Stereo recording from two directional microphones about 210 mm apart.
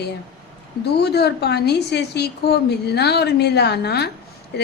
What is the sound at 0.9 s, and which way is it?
A woman's voice, 50° left (ahead or behind).